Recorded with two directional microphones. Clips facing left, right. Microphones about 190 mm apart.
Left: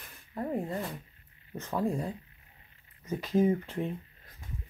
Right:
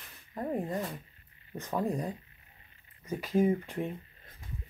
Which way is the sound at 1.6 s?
15° right (ahead or behind).